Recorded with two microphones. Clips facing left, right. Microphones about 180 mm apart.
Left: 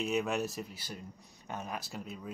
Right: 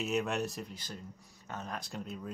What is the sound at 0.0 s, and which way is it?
Speech, centre (ahead or behind).